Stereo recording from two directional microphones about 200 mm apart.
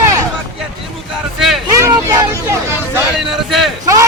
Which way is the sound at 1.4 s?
Centre (ahead or behind).